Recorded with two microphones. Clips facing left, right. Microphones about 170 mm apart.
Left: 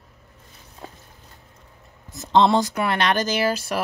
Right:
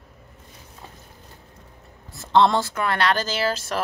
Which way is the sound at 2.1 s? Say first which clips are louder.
Left 1 dB; 20° left (ahead or behind).